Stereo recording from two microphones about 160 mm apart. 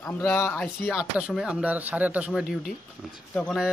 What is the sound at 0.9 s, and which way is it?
Speech, centre (ahead or behind).